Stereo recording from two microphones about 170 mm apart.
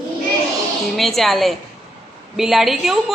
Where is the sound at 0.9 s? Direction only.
Centre (ahead or behind).